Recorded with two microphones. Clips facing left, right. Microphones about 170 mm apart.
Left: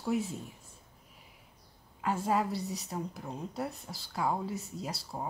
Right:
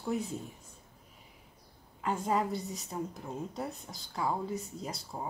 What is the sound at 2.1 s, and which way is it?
A woman's voice, 5° left (ahead or behind).